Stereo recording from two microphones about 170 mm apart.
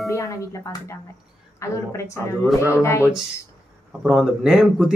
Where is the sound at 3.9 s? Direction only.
5° right (ahead or behind).